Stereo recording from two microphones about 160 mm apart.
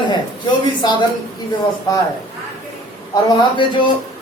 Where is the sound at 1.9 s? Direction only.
25° left (ahead or behind).